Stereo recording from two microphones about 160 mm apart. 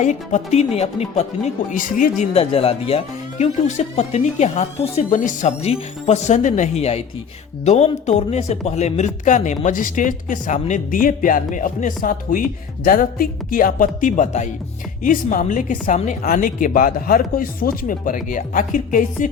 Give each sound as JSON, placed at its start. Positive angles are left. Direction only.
{"t": 0.0, "sound": "speech", "side_deg": 50}
{"t": 2.3, "sound": "a woman's voice", "side_deg": 35}